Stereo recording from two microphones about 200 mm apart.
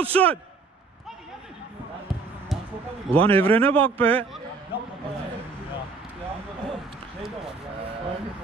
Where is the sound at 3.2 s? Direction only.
10° left (ahead or behind).